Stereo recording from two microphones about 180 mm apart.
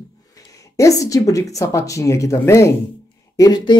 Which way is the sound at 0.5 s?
20° left (ahead or behind).